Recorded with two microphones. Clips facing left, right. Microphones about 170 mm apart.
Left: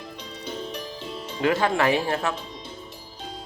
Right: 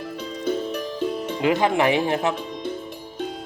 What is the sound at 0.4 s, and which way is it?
Music, 50° right (ahead or behind).